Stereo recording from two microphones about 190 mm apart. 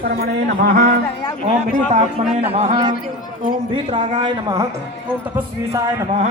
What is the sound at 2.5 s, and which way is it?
Speech, 35° right (ahead or behind).